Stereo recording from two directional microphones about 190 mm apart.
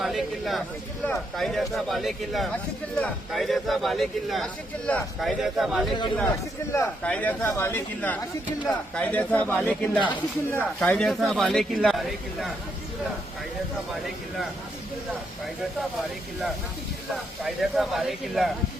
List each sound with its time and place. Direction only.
0.0 s speech: centre (ahead or behind)
6.7 s speech: 15° left (ahead or behind); by 12.5 s centre (ahead or behind)
17.4 s speech: centre (ahead or behind)